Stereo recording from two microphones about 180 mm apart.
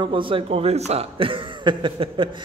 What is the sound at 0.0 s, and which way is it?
A man's voice, 30° right (ahead or behind).